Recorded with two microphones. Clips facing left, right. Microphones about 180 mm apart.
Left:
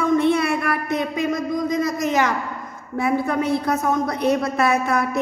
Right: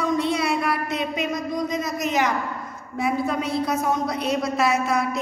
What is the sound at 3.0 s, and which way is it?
A woman's voice, 55° left (ahead or behind).